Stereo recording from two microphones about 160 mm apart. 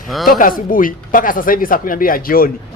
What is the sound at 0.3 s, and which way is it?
Speech, 60° left (ahead or behind).